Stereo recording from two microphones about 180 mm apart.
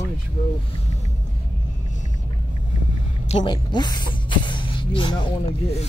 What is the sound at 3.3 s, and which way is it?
Speech, 25° left (ahead or behind).